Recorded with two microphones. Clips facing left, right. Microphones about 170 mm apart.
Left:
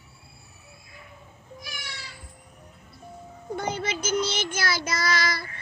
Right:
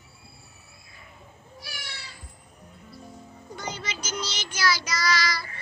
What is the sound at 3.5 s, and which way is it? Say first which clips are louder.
Child singing: left 7 dB; 55° left (ahead or behind).